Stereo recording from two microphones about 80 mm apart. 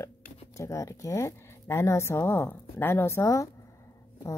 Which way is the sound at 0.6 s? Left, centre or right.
Left.